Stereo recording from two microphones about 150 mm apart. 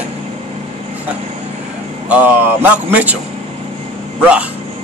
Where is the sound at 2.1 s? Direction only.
10° right (ahead or behind).